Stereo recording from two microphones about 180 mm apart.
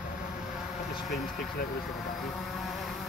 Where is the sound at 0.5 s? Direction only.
Centre (ahead or behind).